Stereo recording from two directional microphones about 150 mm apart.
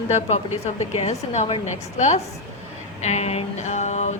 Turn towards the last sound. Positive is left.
turn(degrees=50)  # may be behind; listen again after turning